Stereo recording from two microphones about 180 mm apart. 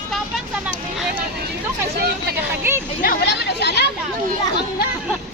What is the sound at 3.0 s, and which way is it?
Speech, 55° left (ahead or behind).